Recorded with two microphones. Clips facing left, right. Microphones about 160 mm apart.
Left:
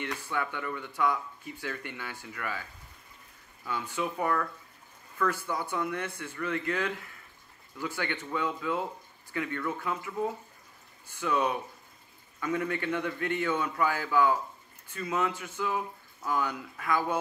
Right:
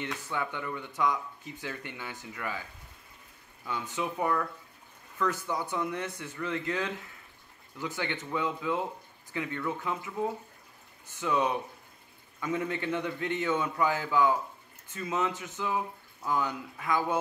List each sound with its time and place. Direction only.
0.3 s speech: 20° right (ahead or behind)
3.6 s a man's voice: 20° right (ahead or behind)
11.1 s a man's voice: 20° right (ahead or behind)